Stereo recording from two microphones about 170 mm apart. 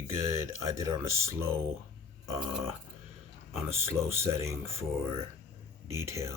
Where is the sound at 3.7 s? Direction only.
15° right (ahead or behind).